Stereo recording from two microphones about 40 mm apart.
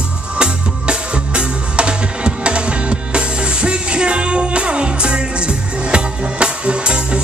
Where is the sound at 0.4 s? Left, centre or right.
Right.